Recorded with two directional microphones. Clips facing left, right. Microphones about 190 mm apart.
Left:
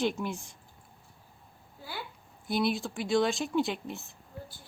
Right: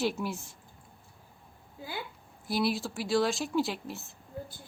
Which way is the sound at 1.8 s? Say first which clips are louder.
Right 2 dB; 15° right (ahead or behind).